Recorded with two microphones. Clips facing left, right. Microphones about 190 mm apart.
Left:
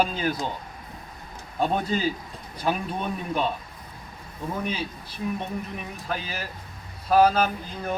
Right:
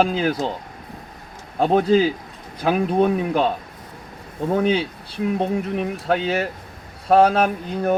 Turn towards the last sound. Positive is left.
turn(degrees=-70)  # may be behind; listen again after turning